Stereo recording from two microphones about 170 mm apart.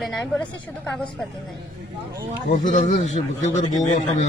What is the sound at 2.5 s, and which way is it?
A man's voice, 50° left (ahead or behind).